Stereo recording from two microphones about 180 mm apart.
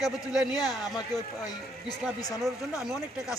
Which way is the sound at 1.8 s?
20° left (ahead or behind).